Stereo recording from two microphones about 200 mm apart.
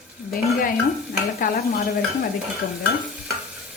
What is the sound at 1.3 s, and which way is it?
Speech, 45° left (ahead or behind).